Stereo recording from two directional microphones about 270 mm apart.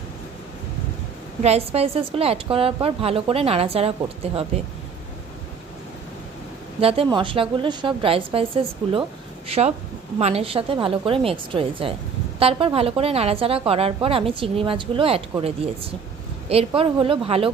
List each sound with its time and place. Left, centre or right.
1.4 s a woman's voice: right
6.8 s a woman's voice: right